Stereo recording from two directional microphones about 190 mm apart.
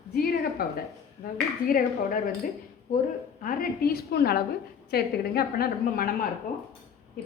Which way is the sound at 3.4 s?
50° left (ahead or behind).